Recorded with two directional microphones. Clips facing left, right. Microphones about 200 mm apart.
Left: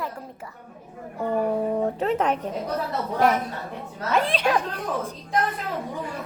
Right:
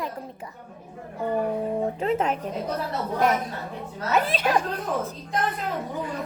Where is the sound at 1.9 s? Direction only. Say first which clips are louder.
Left 1 dB; 10° right (ahead or behind).